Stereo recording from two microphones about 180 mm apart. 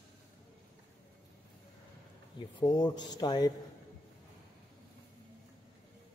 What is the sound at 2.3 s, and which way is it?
A man's voice, 25° left (ahead or behind).